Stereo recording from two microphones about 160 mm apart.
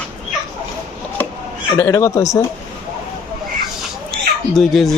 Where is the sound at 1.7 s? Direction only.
15° left (ahead or behind).